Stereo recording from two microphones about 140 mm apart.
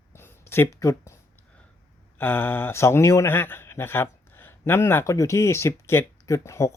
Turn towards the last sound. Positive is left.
turn(degrees=20)  # may be behind; listen again after turning